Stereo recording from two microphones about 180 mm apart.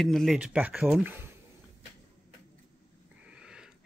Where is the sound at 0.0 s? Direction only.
Centre (ahead or behind).